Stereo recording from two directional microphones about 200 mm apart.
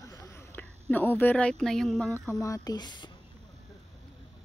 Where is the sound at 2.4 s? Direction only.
15° left (ahead or behind).